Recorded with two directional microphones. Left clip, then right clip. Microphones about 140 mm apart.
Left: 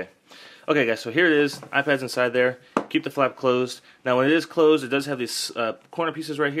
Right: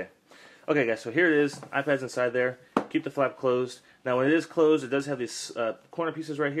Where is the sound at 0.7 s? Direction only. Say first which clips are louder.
Left 4 dB; 35° left (ahead or behind).